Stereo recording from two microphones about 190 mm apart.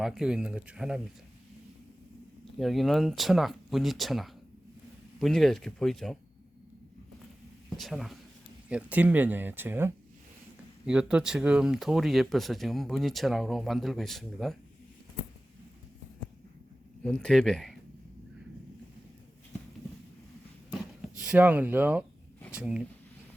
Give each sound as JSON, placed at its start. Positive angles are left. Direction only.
{"t": 0.0, "sound": "speech", "side_deg": -5}
{"t": 2.4, "sound": "speech", "side_deg": 0}
{"t": 7.8, "sound": "speech", "side_deg": 0}
{"t": 17.0, "sound": "speech", "side_deg": 5}
{"t": 21.2, "sound": "speech", "side_deg": -5}